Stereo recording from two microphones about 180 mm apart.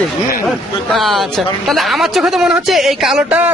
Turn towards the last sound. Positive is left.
turn(degrees=-10)  # may be behind; listen again after turning